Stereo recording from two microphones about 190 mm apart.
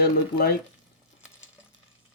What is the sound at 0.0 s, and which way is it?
Speech, 55° left (ahead or behind).